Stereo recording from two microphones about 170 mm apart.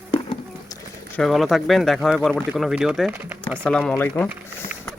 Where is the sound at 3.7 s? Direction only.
5° left (ahead or behind).